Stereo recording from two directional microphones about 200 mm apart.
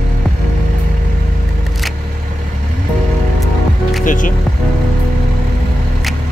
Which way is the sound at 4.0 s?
40° left (ahead or behind).